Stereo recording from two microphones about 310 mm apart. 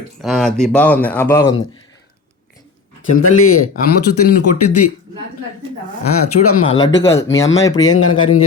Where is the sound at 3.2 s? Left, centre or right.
Left.